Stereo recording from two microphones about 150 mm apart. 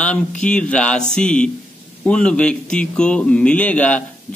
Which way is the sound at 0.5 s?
5° left (ahead or behind).